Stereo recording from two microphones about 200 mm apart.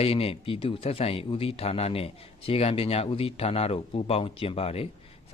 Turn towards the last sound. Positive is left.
turn(degrees=30)  # may be behind; listen again after turning